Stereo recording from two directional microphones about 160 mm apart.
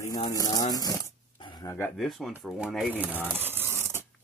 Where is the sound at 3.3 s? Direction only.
15° right (ahead or behind).